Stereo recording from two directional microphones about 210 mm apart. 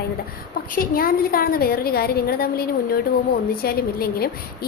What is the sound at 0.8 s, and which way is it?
A woman's voice, 45° left (ahead or behind).